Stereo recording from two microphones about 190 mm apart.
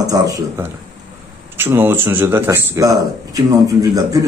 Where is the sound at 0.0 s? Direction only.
20° right (ahead or behind).